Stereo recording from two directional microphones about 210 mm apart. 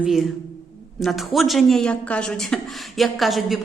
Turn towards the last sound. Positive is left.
turn(degrees=0)  # may be behind; listen again after turning